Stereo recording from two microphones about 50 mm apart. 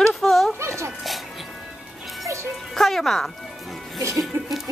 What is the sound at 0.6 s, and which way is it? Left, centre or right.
Speech, right.